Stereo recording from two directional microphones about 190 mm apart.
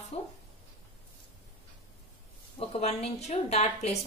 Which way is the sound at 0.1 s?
35° left (ahead or behind).